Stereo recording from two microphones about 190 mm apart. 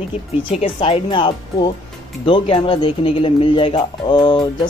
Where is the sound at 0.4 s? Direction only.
30° left (ahead or behind).